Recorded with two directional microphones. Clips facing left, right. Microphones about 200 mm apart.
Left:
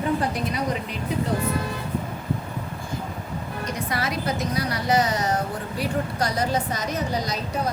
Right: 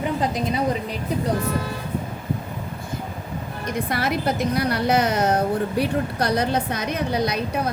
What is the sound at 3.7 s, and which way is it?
A woman's voice, 60° right (ahead or behind).